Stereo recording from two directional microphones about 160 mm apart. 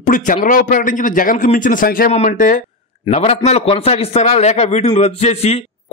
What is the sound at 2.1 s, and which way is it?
Speech, 50° left (ahead or behind).